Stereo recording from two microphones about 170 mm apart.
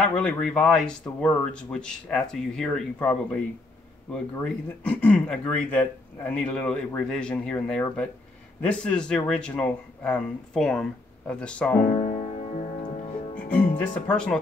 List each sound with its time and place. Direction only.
0.0 s speech: 5° left (ahead or behind)
12.0 s music: 40° left (ahead or behind)
13.7 s speech: 5° left (ahead or behind)